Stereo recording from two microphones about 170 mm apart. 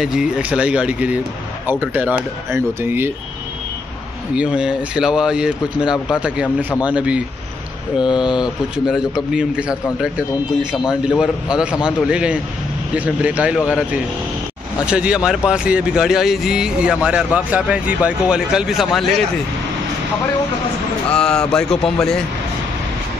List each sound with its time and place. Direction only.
0.0 s speech: 5° right (ahead or behind)
4.4 s speech: 5° right (ahead or behind)
8.1 s speech: 25° left (ahead or behind)
8.7 s speech: 5° right (ahead or behind)
21.1 s speech: 5° left (ahead or behind)